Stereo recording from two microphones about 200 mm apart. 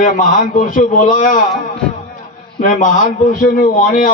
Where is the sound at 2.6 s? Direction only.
40° left (ahead or behind).